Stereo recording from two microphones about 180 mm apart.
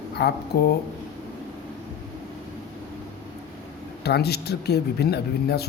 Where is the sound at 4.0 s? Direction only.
65° left (ahead or behind).